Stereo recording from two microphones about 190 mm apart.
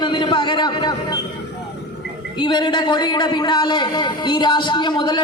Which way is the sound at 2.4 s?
25° left (ahead or behind).